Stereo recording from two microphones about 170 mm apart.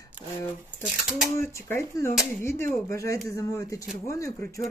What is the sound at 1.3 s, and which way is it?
Speech, 15° left (ahead or behind).